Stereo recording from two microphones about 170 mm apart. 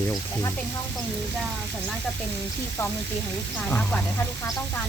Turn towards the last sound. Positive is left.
turn(degrees=10)  # may be behind; listen again after turning